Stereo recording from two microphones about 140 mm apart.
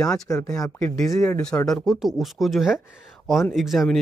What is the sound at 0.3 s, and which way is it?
Speech, 15° left (ahead or behind).